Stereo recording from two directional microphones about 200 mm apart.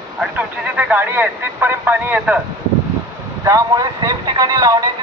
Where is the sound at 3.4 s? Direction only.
15° right (ahead or behind).